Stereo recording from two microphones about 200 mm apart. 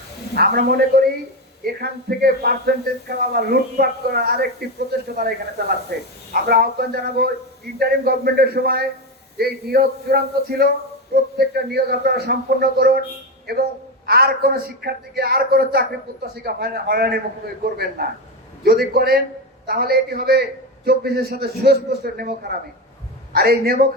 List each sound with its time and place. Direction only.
0.3 s a man's voice: 50° right (ahead or behind)
14.1 s a man's voice: 50° right (ahead or behind)